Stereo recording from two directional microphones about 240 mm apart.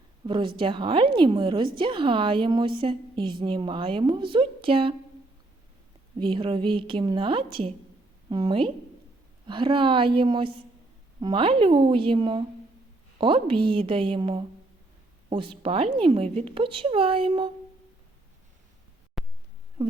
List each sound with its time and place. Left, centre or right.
0.3 s a woman's voice: centre
6.1 s a woman's voice: centre
19.2 s a sound: centre